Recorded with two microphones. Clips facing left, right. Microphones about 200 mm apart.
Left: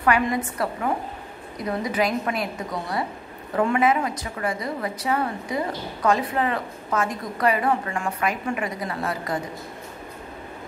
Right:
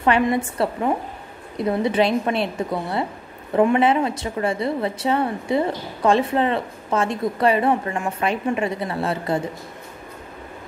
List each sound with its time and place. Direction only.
0.0 s a woman's voice: 25° right (ahead or behind)